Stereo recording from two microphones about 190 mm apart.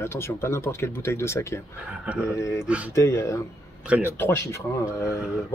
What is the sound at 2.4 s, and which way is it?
Speech, 15° left (ahead or behind).